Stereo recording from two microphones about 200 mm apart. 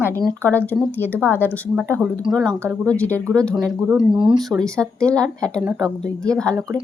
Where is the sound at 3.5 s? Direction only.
20° right (ahead or behind).